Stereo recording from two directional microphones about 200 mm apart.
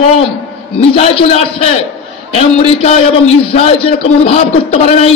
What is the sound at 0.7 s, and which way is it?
A man's voice, 30° left (ahead or behind).